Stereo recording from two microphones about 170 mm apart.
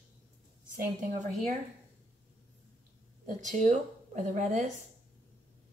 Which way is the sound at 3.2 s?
50° right (ahead or behind).